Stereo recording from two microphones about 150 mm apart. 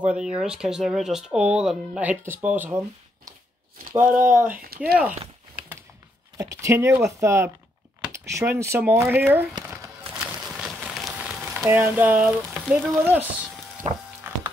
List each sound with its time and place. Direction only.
0.0 s speech: 5° right (ahead or behind)
3.9 s speech: 15° right (ahead or behind)
4.8 s speech: 5° right (ahead or behind)
6.3 s speech: 20° right (ahead or behind)
10.1 s a sound: 10° right (ahead or behind)
11.6 s speech: 15° right (ahead or behind)